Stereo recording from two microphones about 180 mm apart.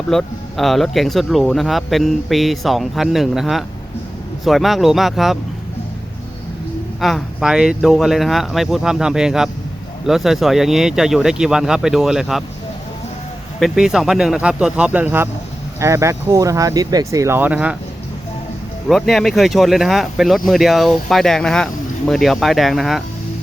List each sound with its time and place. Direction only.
0.1 s speech: centre (ahead or behind)
7.0 s speech: centre (ahead or behind)
13.6 s speech: 5° right (ahead or behind)
18.9 s speech: centre (ahead or behind)